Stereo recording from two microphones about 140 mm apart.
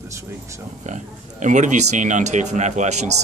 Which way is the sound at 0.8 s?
60° right (ahead or behind).